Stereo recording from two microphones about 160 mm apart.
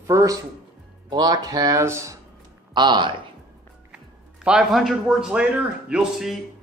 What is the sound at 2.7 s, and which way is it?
Speech, 30° right (ahead or behind).